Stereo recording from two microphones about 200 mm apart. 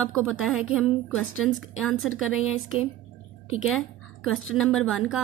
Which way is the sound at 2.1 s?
90° left.